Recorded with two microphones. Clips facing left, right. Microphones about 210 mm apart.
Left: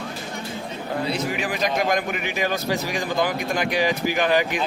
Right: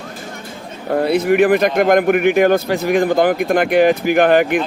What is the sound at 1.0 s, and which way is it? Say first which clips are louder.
Speech: right 15 dB; 60° right (ahead or behind).